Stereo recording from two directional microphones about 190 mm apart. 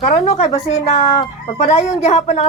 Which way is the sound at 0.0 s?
40° left (ahead or behind).